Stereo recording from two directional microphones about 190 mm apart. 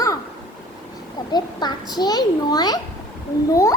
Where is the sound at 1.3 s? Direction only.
20° left (ahead or behind).